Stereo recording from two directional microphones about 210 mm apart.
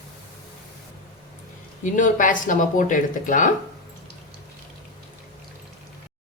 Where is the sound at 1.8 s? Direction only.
40° left (ahead or behind).